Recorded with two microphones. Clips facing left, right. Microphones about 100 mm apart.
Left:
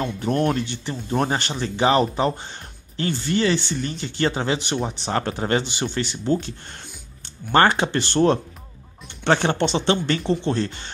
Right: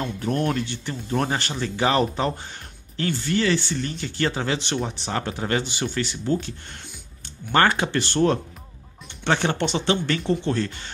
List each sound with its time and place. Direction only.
0.3 s speech: 30° left (ahead or behind); by 4.9 s 10° left (ahead or behind)
5.1 s speech: 40° left (ahead or behind)
5.5 s speech: 25° left (ahead or behind)